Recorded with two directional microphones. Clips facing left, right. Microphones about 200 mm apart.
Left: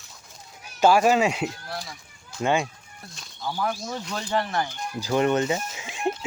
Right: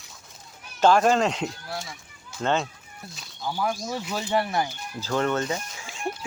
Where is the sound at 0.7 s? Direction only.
10° left (ahead or behind).